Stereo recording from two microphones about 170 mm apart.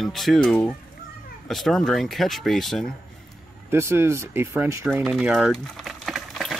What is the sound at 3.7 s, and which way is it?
Speech, 15° right (ahead or behind).